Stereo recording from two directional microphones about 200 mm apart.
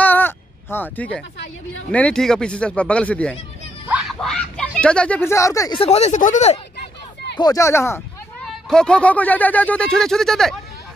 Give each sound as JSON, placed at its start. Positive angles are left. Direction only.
{"t": 0.0, "sound": "a sound", "side_deg": 10}
{"t": 1.9, "sound": "speech", "side_deg": 5}
{"t": 3.8, "sound": "a sound", "side_deg": -5}
{"t": 4.3, "sound": "speech", "side_deg": 5}
{"t": 5.8, "sound": "speech", "side_deg": 30}
{"t": 7.3, "sound": "speech", "side_deg": 15}